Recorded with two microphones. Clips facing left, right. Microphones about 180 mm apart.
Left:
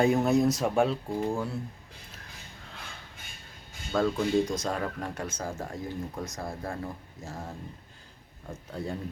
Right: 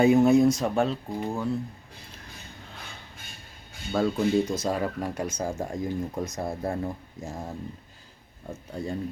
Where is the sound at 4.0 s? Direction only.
5° right (ahead or behind); by 6.8 s 20° right (ahead or behind).